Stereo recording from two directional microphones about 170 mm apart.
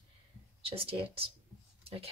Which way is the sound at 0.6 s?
35° right (ahead or behind).